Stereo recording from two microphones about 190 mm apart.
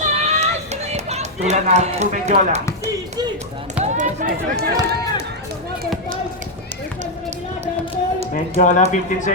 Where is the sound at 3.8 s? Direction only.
40° right (ahead or behind).